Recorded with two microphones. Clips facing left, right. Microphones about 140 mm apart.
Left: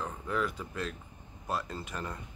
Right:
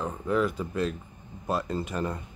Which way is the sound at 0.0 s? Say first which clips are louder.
Right 7 dB; 20° right (ahead or behind).